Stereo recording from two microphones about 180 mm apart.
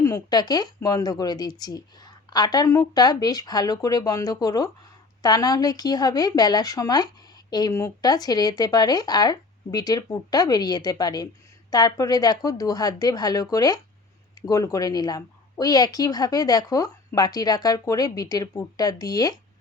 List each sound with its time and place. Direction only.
0.0 s a woman's voice: 20° left (ahead or behind)